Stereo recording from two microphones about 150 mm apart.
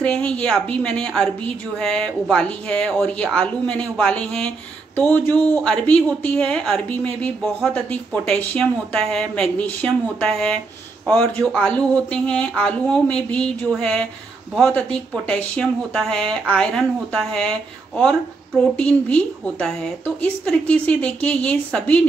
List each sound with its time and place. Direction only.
0.0 s a woman's voice: 5° left (ahead or behind)